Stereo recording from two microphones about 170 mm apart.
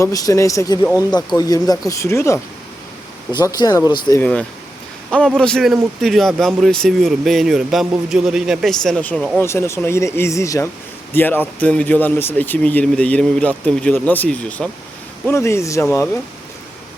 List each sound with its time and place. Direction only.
0.0 s speech: 20° left (ahead or behind)
4.2 s speech: 5° left (ahead or behind)
9.4 s speech: 15° left (ahead or behind)